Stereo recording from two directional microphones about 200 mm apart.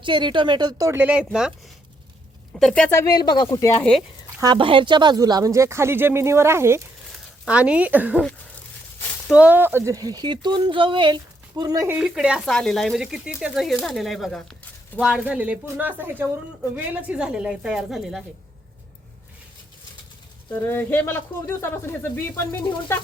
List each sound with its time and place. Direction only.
0.0 s speech: 25° right (ahead or behind); by 1.5 s 5° right (ahead or behind)
2.6 s speech: 5° left (ahead or behind)
4.4 s speech: 25° right (ahead or behind); by 8.3 s 5° right (ahead or behind)
9.3 s speech: 5° right (ahead or behind)
11.9 s speech: 5° right (ahead or behind)
20.5 s speech: 10° left (ahead or behind)